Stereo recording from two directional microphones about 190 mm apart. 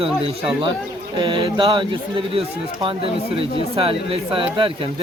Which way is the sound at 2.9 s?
30° right (ahead or behind).